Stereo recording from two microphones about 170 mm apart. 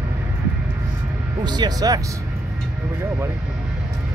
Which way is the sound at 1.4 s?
25° right (ahead or behind).